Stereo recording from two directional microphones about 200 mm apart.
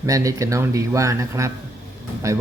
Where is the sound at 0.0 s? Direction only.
15° right (ahead or behind).